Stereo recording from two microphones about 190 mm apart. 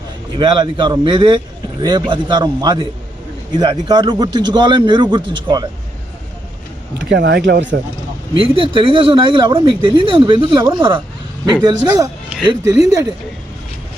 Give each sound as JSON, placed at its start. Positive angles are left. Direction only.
{"t": 0.3, "sound": "speech", "side_deg": -25}
{"t": 7.0, "sound": "speech", "side_deg": -70}
{"t": 8.4, "sound": "speech", "side_deg": -30}